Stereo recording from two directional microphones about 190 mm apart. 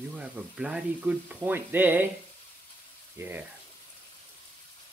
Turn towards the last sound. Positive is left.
turn(degrees=-10)  # may be behind; listen again after turning